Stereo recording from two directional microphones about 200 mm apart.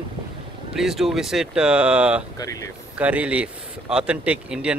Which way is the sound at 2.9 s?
5° right (ahead or behind).